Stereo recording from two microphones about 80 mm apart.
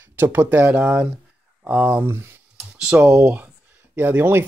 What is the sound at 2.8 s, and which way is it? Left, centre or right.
Speech, centre.